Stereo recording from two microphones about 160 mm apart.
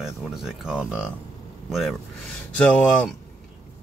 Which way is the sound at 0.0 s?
5° right (ahead or behind).